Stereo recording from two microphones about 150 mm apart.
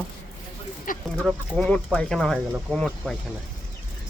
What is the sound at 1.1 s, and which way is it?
Speech, 5° left (ahead or behind).